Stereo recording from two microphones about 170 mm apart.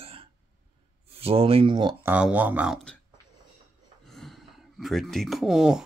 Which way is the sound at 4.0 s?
Centre (ahead or behind).